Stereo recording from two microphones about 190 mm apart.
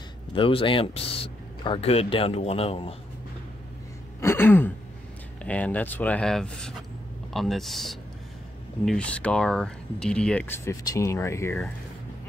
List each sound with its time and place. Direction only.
0.3 s speech: 30° left (ahead or behind)
4.2 s throat clearing: 10° left (ahead or behind)
5.4 s speech: 5° left (ahead or behind)